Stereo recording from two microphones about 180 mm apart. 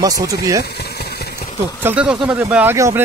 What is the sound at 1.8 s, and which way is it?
Speech, 10° right (ahead or behind).